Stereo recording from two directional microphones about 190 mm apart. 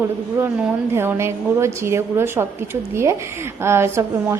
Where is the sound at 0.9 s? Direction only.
15° right (ahead or behind).